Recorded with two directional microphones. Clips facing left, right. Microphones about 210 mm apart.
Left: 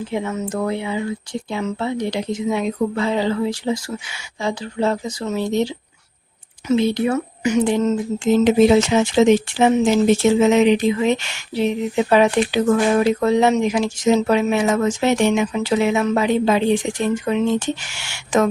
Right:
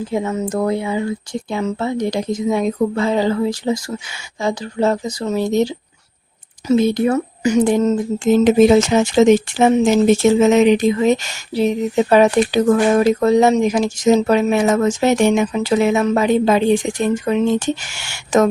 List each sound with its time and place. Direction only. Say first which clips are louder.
0.1 s speech: right 4 dB; 40° right (ahead or behind)